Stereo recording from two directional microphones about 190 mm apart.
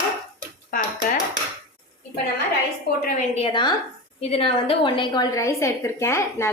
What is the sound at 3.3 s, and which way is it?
A woman's voice, 30° left (ahead or behind).